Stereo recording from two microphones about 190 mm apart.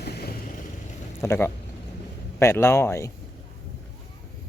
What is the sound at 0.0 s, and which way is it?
Vehicle, 55° left (ahead or behind).